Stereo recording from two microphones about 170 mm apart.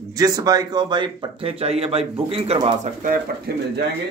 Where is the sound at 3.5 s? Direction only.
70° right (ahead or behind).